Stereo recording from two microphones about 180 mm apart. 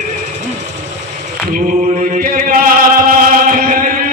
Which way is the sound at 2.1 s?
50° right (ahead or behind).